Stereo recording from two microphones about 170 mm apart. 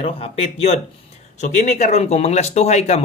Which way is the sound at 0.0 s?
35° left (ahead or behind).